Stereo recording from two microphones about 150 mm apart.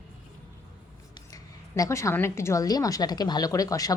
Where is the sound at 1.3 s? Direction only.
25° left (ahead or behind).